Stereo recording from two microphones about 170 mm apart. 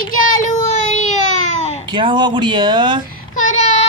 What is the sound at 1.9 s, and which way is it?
Speech, 25° right (ahead or behind).